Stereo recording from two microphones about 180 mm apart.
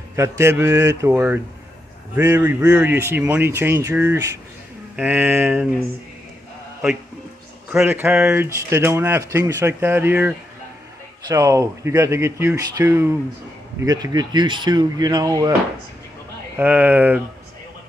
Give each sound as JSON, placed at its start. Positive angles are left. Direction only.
{"t": 0.1, "sound": "speech", "side_deg": -15}
{"t": 7.7, "sound": "speech", "side_deg": -10}
{"t": 16.5, "sound": "speech", "side_deg": -10}